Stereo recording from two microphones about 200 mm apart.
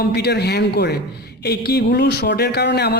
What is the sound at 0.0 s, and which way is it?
Speech, 55° left (ahead or behind).